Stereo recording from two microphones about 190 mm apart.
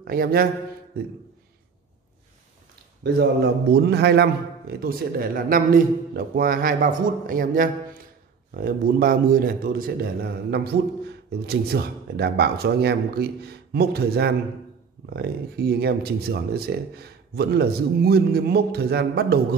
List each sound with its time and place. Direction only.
0.0 s a man's voice: 50° right (ahead or behind)
3.0 s a man's voice: 60° right (ahead or behind)